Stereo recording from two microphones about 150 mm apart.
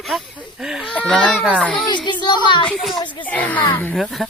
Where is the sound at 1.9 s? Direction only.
30° left (ahead or behind).